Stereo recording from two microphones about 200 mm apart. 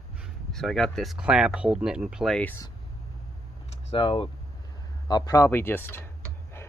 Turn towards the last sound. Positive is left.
turn(degrees=10)  # may be behind; listen again after turning